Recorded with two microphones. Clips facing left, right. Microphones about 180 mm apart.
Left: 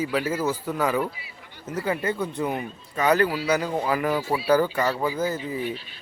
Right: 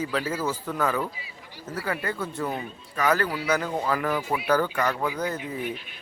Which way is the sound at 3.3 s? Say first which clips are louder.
Left 2 dB; 5° left (ahead or behind).